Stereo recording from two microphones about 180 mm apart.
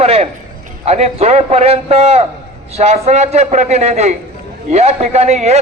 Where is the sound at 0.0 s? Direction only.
35° right (ahead or behind).